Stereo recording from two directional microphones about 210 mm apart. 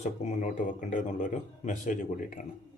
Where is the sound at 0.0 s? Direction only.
35° left (ahead or behind).